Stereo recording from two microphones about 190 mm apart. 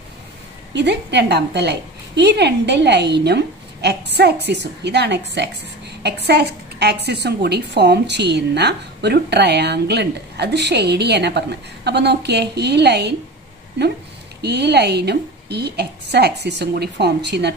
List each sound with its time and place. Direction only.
0.7 s a woman's voice: 65° right (ahead or behind)
14.4 s a woman's voice: 60° right (ahead or behind)